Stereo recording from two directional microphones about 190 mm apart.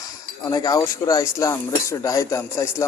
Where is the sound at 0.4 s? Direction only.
20° left (ahead or behind).